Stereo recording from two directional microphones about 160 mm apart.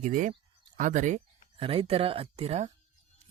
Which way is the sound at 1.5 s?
35° right (ahead or behind).